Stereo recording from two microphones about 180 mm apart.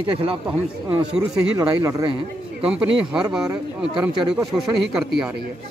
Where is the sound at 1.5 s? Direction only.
20° right (ahead or behind).